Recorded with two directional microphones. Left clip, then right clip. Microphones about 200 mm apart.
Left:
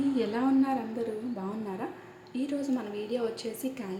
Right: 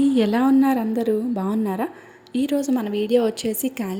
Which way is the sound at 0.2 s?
45° right (ahead or behind).